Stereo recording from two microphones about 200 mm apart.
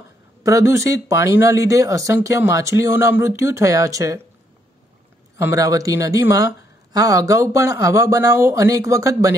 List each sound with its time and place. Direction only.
0.4 s speech: 15° right (ahead or behind)
5.4 s speech: 15° right (ahead or behind)